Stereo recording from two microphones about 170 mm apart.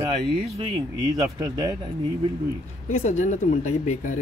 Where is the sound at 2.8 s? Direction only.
45° left (ahead or behind).